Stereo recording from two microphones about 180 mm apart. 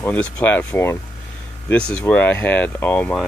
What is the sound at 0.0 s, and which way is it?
Speech, 10° left (ahead or behind).